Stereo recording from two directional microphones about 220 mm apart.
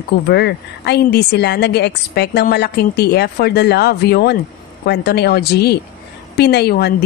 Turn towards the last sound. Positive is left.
turn(degrees=50)  # may be behind; listen again after turning